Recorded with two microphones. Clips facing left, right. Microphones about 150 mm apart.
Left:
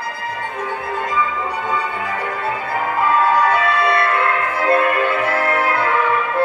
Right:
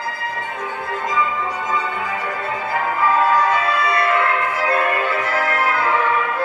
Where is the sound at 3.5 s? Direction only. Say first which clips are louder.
Left 2 dB; 60° left (ahead or behind).